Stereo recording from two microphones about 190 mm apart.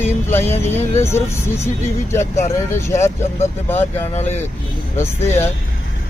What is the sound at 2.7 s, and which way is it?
Speech, 15° left (ahead or behind).